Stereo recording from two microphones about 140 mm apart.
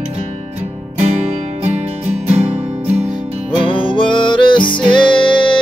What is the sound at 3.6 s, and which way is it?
Music, 35° left (ahead or behind).